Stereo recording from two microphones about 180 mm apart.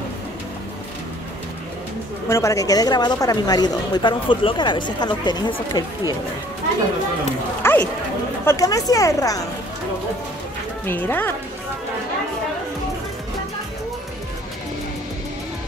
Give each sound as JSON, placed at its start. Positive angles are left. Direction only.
{"t": 2.2, "sound": "a woman's voice", "side_deg": 15}
{"t": 7.6, "sound": "a woman's voice", "side_deg": 10}
{"t": 10.9, "sound": "speech", "side_deg": 10}